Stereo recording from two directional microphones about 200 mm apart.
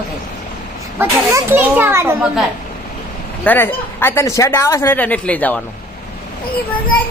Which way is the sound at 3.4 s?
10° left (ahead or behind).